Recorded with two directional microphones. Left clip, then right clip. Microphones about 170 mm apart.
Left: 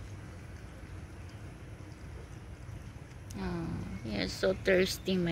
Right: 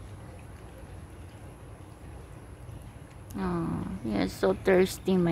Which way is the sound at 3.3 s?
45° right (ahead or behind).